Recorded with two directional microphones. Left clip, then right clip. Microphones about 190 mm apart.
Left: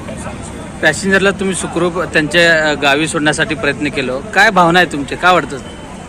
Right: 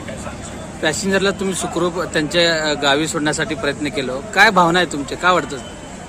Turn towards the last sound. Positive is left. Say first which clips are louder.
# left 5 dB
turn(degrees=-5)  # may be behind; listen again after turning